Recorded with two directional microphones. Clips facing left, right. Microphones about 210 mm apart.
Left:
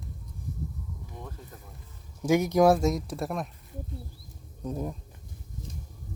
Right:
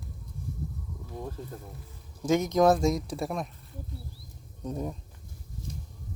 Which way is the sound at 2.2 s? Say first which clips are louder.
Left 1 dB; 10° left (ahead or behind).